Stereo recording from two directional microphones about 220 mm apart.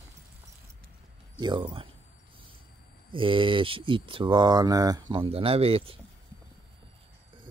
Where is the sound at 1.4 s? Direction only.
20° right (ahead or behind).